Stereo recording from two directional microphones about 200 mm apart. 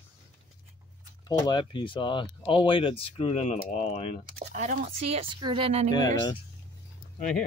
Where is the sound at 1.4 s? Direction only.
25° left (ahead or behind).